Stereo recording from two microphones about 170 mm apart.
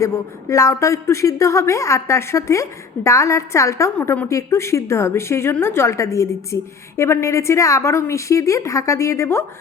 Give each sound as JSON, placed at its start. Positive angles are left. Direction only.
{"t": 0.0, "sound": "a woman's voice", "side_deg": 20}